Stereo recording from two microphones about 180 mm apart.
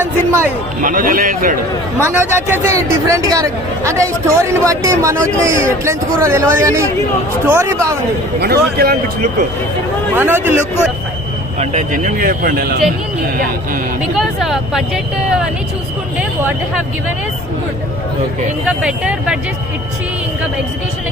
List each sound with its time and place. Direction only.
0.0 s speech: 10° right (ahead or behind)
0.8 s speech: 50° right (ahead or behind)
2.0 s speech: 15° right (ahead or behind)
8.4 s a man's voice: 60° right (ahead or behind)
10.2 s speech: 10° right (ahead or behind)
11.6 s speech: 40° right (ahead or behind)
14.2 s speech: centre (ahead or behind)
18.8 s speech: 5° right (ahead or behind)